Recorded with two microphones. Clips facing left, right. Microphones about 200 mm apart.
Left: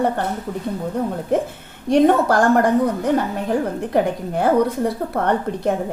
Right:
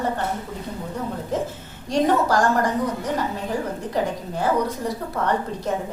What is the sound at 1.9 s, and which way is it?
A woman's voice, 55° left (ahead or behind).